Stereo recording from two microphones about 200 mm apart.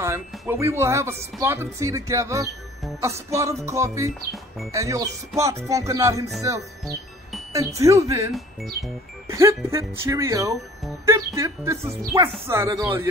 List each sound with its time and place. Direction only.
0.0 s speech: 15° right (ahead or behind)
7.5 s speech: 15° right (ahead or behind)
9.3 s speech: 15° right (ahead or behind)